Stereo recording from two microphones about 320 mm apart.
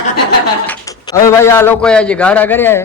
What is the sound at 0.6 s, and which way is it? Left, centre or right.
A man's voice, centre.